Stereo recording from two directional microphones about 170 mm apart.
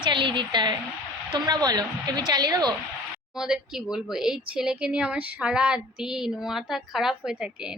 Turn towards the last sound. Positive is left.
turn(degrees=0)  # may be behind; listen again after turning